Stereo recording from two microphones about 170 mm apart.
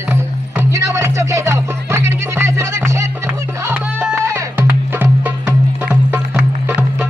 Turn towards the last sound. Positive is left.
turn(degrees=-10)  # may be behind; listen again after turning